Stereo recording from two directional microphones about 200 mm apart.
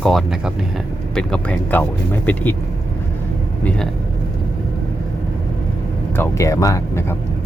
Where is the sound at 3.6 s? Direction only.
5° left (ahead or behind).